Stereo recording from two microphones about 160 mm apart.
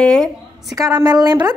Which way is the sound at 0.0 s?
5° left (ahead or behind).